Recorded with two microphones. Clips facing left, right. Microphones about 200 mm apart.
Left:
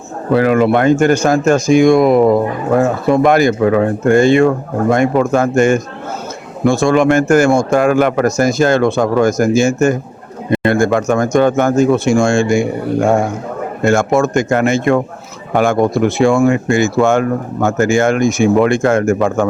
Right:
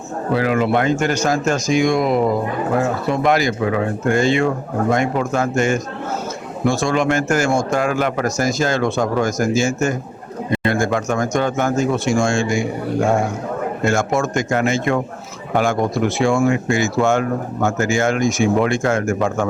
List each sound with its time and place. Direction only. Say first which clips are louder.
0.3 s speech: left 6 dB; 55° left (ahead or behind)
13.8 s speech: left 7 dB; 55° left (ahead or behind)